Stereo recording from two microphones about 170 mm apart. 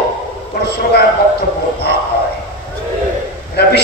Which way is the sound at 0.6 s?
75° left (ahead or behind).